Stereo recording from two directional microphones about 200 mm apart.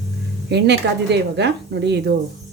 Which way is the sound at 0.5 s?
55° right (ahead or behind).